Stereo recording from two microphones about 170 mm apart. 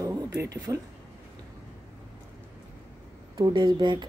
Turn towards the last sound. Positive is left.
turn(degrees=-25)  # may be behind; listen again after turning